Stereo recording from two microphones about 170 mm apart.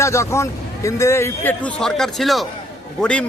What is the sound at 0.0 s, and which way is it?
Speech, 15° left (ahead or behind).